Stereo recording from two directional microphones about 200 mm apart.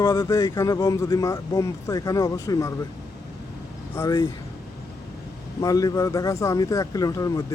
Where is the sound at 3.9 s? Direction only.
15° left (ahead or behind).